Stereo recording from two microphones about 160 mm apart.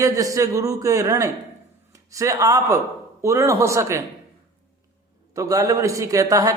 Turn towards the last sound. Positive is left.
turn(degrees=-20)  # may be behind; listen again after turning